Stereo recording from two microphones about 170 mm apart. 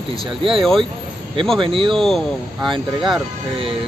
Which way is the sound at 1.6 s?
30° right (ahead or behind).